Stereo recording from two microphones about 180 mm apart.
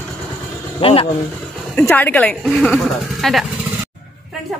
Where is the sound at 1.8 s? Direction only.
10° left (ahead or behind).